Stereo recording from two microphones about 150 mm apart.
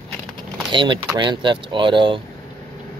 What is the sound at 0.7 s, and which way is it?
Speech, 30° right (ahead or behind).